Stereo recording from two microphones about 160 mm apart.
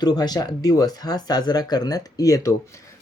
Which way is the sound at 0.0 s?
25° left (ahead or behind).